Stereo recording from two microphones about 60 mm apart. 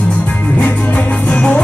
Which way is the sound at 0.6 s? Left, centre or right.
Left.